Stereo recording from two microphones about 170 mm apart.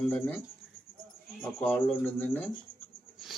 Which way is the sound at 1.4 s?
10° left (ahead or behind).